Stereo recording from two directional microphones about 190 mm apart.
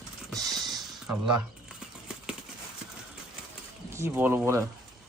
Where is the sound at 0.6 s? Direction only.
Centre (ahead or behind).